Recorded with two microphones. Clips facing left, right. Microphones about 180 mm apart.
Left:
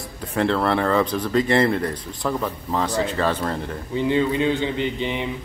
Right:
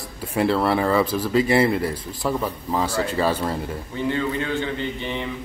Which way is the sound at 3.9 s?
20° left (ahead or behind).